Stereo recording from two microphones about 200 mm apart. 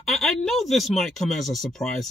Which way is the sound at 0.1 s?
Centre (ahead or behind).